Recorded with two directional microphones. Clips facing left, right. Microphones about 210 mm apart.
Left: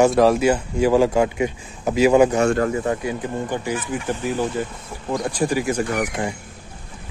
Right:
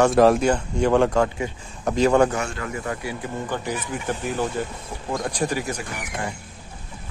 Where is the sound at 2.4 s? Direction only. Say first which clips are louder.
Left 13 dB; 45° left (ahead or behind).